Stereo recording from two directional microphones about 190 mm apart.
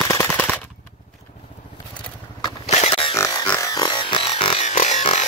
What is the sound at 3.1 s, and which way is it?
Music, 15° left (ahead or behind).